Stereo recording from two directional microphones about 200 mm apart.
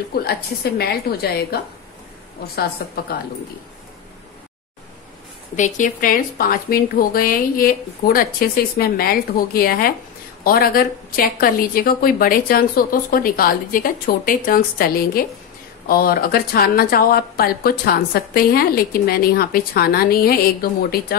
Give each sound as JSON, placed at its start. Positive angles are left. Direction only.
{"t": 0.1, "sound": "a woman's voice", "side_deg": 55}
{"t": 5.6, "sound": "a woman's voice", "side_deg": 40}